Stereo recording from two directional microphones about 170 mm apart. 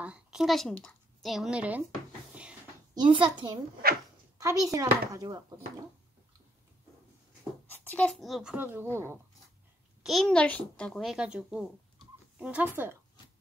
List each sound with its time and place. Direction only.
0.0 s a woman's voice: 5° right (ahead or behind)
2.9 s a child's voice: 25° right (ahead or behind)
3.8 s speech: 60° right (ahead or behind)
4.4 s a child's voice: 20° right (ahead or behind)
7.7 s a child's voice: 10° left (ahead or behind); by 9.2 s 15° right (ahead or behind)
10.0 s a child's voice: centre (ahead or behind)